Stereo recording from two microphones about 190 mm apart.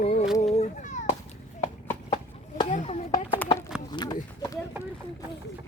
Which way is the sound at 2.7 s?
40° left (ahead or behind).